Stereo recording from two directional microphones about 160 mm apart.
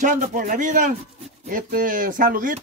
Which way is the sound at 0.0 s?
50° right (ahead or behind).